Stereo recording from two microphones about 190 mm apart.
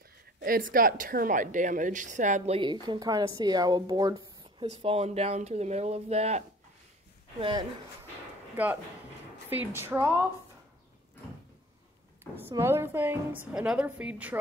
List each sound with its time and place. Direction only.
0.4 s a woman's voice: 45° right (ahead or behind); by 4.6 s 20° right (ahead or behind)
4.6 s a woman's voice: 30° right (ahead or behind)
9.5 s a woman's voice: 10° right (ahead or behind)
12.4 s a woman's voice: 15° right (ahead or behind)